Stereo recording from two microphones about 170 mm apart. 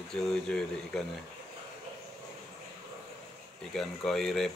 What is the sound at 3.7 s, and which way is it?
Speech, centre (ahead or behind).